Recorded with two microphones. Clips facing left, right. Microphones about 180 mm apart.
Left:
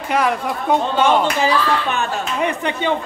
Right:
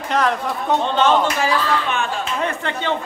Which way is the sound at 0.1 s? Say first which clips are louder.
Left 1 dB; 10° left (ahead or behind).